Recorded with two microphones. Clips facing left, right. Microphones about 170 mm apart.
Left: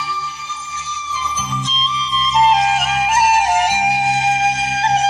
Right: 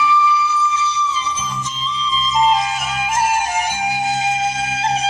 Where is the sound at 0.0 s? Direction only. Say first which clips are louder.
Right 11 dB; 45° left (ahead or behind).